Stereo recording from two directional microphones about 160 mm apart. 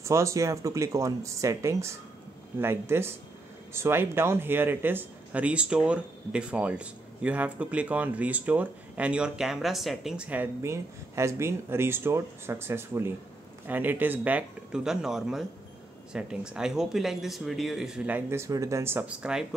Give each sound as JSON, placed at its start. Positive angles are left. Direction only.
{"t": 0.0, "sound": "speech", "side_deg": -20}